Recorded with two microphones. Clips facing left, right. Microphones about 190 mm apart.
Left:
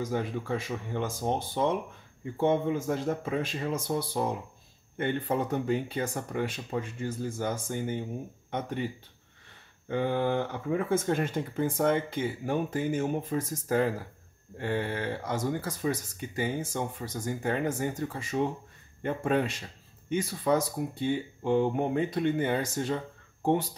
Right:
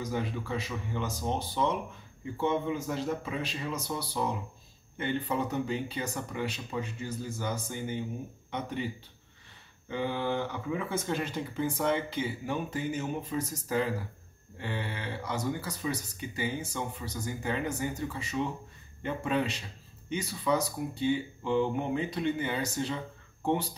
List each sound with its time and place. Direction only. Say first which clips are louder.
0.0 s speech: left 2 dB; 50° left (ahead or behind)